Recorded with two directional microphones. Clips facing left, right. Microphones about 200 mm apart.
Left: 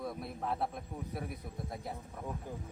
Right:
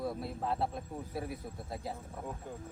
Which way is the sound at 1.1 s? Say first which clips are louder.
Right 3 dB; 25° right (ahead or behind).